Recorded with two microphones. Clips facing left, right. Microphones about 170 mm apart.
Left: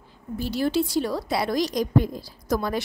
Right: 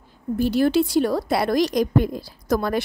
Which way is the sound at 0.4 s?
55° right (ahead or behind).